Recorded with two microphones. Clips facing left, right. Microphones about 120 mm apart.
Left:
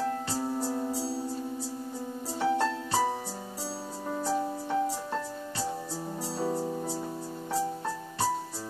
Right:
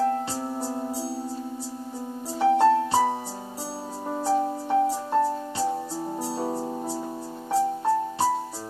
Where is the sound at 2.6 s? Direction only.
20° right (ahead or behind).